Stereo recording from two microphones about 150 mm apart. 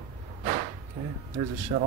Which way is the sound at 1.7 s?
50° right (ahead or behind).